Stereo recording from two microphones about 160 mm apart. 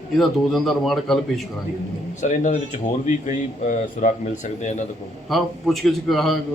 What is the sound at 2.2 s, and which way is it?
Speech, 50° left (ahead or behind).